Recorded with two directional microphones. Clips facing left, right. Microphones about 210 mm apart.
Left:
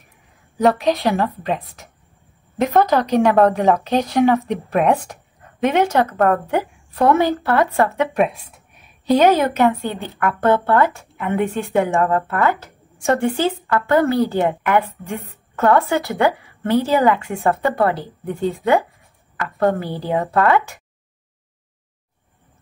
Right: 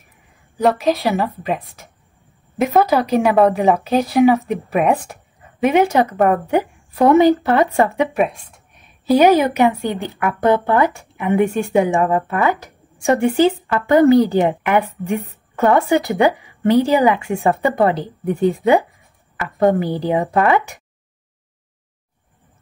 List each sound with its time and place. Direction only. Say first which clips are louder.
0.6 s a woman's voice: even; centre (ahead or behind)
8.2 s a woman's voice: even; centre (ahead or behind); by 20.8 s 15° right (ahead or behind)